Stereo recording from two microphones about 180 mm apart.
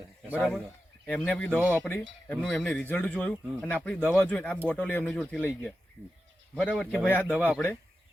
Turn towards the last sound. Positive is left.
turn(degrees=10)  # may be behind; listen again after turning